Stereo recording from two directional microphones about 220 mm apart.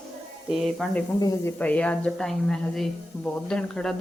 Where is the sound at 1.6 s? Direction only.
5° left (ahead or behind).